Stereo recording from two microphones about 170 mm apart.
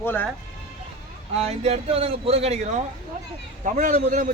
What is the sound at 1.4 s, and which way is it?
A man's voice, 40° right (ahead or behind).